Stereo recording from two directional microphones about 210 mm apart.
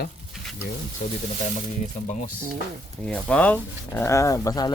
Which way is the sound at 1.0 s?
35° left (ahead or behind).